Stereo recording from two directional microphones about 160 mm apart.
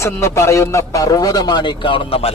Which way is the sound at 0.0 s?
15° left (ahead or behind).